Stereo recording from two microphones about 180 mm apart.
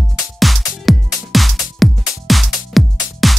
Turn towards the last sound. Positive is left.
turn(degrees=0)  # may be behind; listen again after turning